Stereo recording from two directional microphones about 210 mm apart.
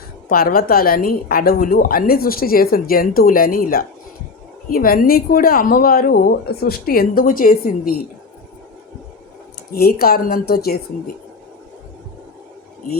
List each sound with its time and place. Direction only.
0.3 s a woman's voice: 45° left (ahead or behind)
9.7 s a woman's voice: 45° left (ahead or behind)